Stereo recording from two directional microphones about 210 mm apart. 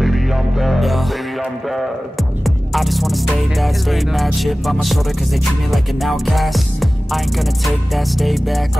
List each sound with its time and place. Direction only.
0.0 s music: centre (ahead or behind)